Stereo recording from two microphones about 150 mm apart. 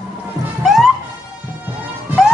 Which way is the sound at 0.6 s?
Centre (ahead or behind).